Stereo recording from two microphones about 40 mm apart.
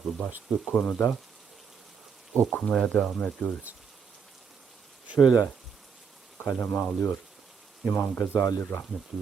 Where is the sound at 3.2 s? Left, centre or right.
Left.